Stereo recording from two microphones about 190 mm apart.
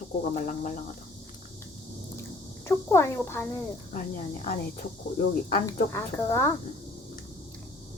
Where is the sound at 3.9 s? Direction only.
45° left (ahead or behind).